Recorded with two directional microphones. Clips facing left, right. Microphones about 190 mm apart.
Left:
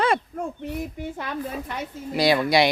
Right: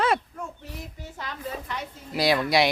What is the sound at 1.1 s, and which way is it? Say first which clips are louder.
Speech: left 1 dB; 55° left (ahead or behind).